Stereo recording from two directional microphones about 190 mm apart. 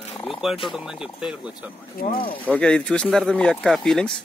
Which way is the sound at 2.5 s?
5° left (ahead or behind).